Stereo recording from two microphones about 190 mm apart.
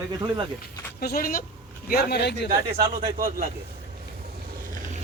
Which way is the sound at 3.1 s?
50° right (ahead or behind).